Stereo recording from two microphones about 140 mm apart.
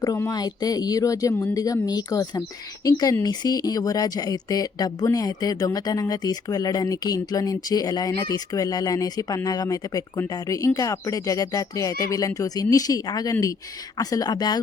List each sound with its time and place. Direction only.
0.0 s speech: 25° left (ahead or behind)